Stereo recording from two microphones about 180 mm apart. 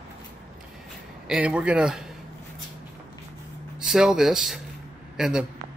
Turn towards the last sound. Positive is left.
turn(degrees=-5)  # may be behind; listen again after turning